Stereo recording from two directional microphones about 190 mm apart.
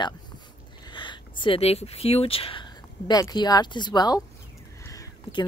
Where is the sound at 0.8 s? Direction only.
25° left (ahead or behind).